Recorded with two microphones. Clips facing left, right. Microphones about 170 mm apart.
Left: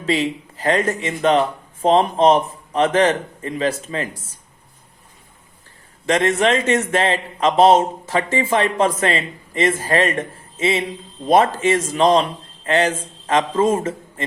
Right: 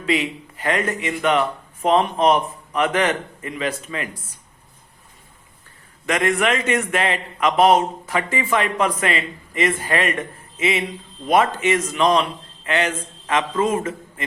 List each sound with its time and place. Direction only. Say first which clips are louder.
0.0 s speech: left 2 dB; 30° left (ahead or behind)
6.1 s a man's voice: left 3 dB; 30° left (ahead or behind)